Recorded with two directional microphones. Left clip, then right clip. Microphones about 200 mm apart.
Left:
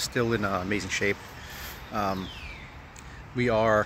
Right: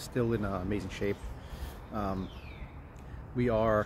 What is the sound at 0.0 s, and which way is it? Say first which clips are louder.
Speech: left 6 dB; 15° left (ahead or behind).